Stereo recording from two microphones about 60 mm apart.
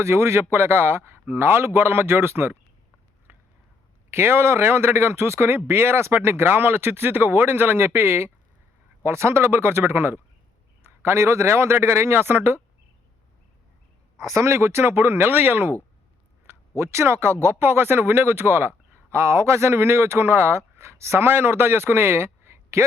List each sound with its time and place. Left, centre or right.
0.0 s speech: right
3.3 s a sound: right
4.1 s speech: right
14.2 s speech: right
16.5 s speech: right
19.1 s speech: right